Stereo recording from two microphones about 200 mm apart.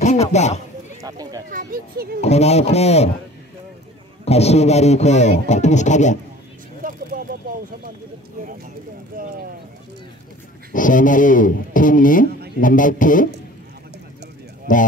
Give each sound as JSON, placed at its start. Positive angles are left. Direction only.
{"t": 0.0, "sound": "a sound", "side_deg": 35}
{"t": 1.0, "sound": "a sound", "side_deg": -20}
{"t": 1.5, "sound": "speech", "side_deg": -45}
{"t": 2.2, "sound": "speech", "side_deg": 30}
{"t": 4.2, "sound": "speech", "side_deg": 30}
{"t": 6.8, "sound": "a sound", "side_deg": -45}
{"t": 9.1, "sound": "speech", "side_deg": -45}
{"t": 10.7, "sound": "speech", "side_deg": 40}
{"t": 14.7, "sound": "speech", "side_deg": 40}